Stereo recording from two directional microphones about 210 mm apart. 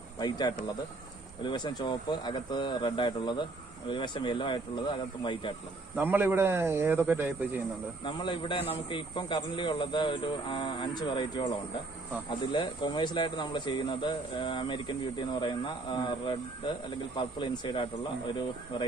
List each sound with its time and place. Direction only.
0.2 s speech: 20° left (ahead or behind)
5.9 s speech: 10° right (ahead or behind)
8.0 s speech: 20° left (ahead or behind)